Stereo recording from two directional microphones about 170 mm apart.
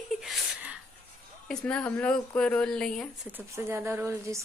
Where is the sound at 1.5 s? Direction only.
5° left (ahead or behind).